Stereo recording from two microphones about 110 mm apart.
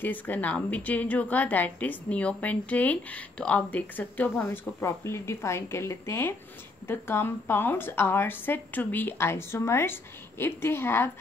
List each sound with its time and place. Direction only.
0.0 s a woman's voice: 15° left (ahead or behind)